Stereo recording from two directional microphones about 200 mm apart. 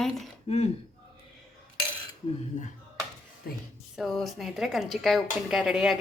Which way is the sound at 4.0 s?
Centre (ahead or behind).